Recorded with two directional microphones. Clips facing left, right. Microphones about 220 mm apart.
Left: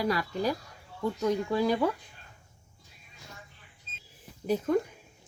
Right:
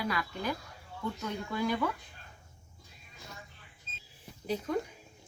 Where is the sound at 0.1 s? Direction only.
35° left (ahead or behind).